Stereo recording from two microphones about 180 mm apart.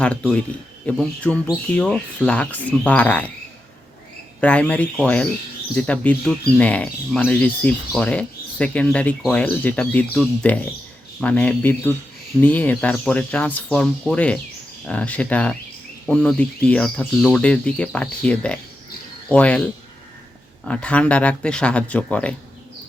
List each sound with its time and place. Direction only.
0.0 s speech: 5° left (ahead or behind)
4.4 s speech: 5° left (ahead or behind)
20.7 s speech: 5° left (ahead or behind)